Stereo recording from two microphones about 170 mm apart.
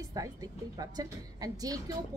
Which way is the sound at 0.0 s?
20° right (ahead or behind).